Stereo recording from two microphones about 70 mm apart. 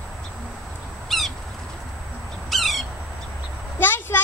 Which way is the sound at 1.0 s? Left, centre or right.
Centre.